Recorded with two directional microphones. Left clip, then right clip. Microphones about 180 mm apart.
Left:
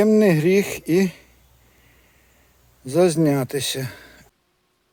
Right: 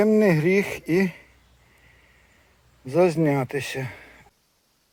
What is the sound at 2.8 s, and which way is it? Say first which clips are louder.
Speech: left 2 dB; 20° left (ahead or behind).